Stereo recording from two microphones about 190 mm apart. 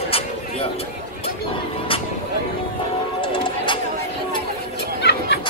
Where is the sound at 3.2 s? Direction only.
25° left (ahead or behind).